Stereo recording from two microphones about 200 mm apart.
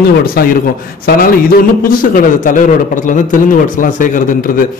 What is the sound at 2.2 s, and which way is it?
A man's voice, 40° left (ahead or behind).